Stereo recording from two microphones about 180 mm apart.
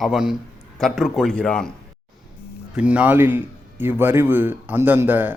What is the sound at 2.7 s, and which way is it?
A man's voice, 5° right (ahead or behind).